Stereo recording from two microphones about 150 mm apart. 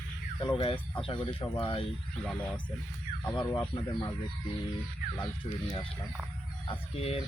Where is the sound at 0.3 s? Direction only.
30° left (ahead or behind).